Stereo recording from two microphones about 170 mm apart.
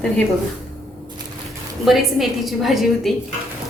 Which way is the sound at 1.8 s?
Centre (ahead or behind).